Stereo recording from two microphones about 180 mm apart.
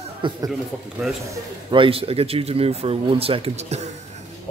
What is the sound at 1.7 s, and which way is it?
Speech, 30° right (ahead or behind).